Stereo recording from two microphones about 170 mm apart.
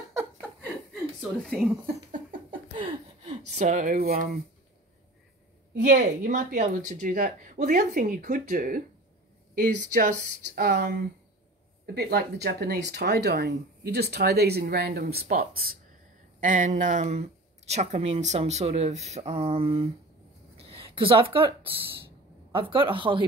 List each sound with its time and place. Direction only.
1.4 s speech: centre (ahead or behind)
2.5 s a sound: 30° right (ahead or behind)
3.5 s a woman's voice: 45° right (ahead or behind); by 4.4 s 60° right (ahead or behind)
5.8 s a woman's voice: 50° right (ahead or behind)
16.3 s speech: 50° right (ahead or behind)
20.5 s a sound: 35° right (ahead or behind)
22.5 s speech: 30° right (ahead or behind)